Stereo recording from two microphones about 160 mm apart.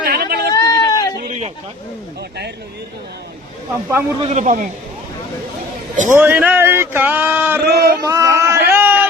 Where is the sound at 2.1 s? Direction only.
90° right.